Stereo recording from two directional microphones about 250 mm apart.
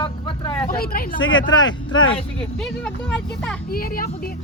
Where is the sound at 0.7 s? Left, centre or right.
Left.